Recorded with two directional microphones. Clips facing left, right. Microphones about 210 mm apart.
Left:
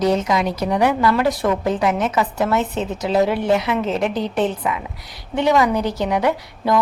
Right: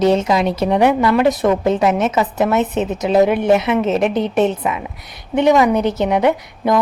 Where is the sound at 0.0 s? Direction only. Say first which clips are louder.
Right 4 dB; 25° right (ahead or behind).